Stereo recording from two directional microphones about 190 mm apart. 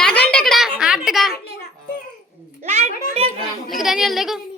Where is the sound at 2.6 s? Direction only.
35° right (ahead or behind).